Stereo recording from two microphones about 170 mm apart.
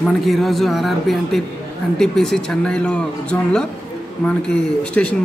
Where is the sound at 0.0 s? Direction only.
Centre (ahead or behind).